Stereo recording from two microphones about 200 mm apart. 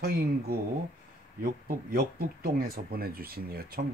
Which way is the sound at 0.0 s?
50° right (ahead or behind).